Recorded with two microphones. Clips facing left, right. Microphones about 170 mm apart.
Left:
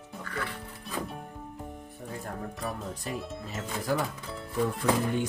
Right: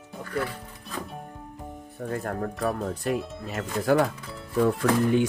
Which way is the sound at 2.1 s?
65° right (ahead or behind).